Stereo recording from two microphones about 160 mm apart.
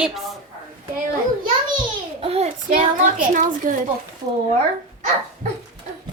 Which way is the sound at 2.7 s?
55° right (ahead or behind).